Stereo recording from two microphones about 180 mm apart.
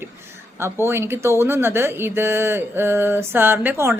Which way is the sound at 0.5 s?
15° right (ahead or behind).